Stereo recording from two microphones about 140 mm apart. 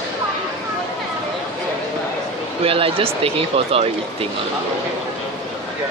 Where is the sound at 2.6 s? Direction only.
40° right (ahead or behind).